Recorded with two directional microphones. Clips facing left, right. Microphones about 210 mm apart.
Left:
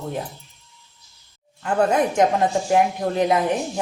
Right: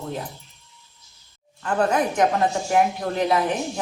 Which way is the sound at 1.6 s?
25° left (ahead or behind).